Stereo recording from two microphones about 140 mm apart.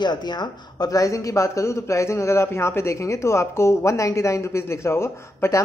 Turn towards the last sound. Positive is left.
turn(degrees=20)  # may be behind; listen again after turning